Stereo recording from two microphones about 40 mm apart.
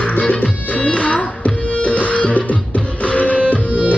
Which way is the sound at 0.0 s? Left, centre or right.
Left.